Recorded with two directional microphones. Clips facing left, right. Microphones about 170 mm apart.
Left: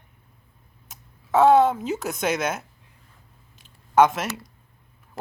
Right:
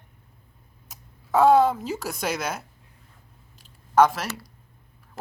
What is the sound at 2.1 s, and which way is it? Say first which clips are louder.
Speech: left 4 dB; centre (ahead or behind).